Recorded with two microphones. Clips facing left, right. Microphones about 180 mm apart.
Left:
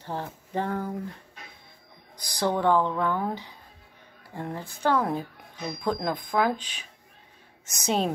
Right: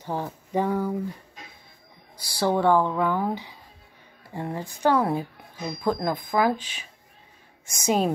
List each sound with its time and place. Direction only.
0.0 s speech: 15° right (ahead or behind)
2.1 s speech: 10° right (ahead or behind)